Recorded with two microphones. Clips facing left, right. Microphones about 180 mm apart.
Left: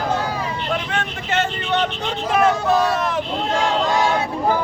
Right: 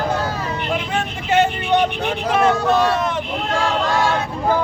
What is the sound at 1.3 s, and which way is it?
Vehicle, 15° right (ahead or behind).